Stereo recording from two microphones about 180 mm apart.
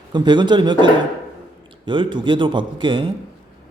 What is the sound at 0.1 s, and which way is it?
Speech, 25° right (ahead or behind).